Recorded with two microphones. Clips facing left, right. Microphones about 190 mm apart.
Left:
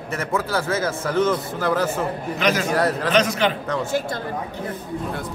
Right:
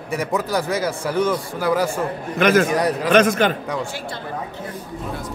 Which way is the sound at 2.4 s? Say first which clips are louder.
Right 6 dB; 55° right (ahead or behind).